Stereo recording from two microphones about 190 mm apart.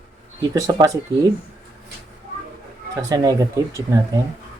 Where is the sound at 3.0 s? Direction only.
20° right (ahead or behind).